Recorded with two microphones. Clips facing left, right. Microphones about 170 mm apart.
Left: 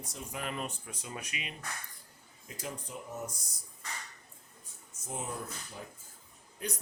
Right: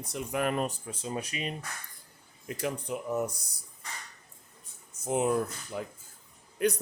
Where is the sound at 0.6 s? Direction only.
30° right (ahead or behind).